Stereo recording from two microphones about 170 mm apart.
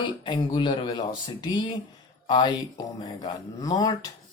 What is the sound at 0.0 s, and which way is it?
Speech, 25° left (ahead or behind).